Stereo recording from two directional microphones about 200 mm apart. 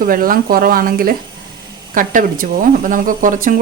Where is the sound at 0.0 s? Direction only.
45° right (ahead or behind).